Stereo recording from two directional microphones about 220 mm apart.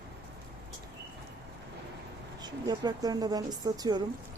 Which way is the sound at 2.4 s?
20° right (ahead or behind).